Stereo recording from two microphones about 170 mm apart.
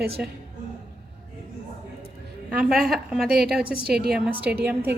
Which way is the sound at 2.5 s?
5° right (ahead or behind).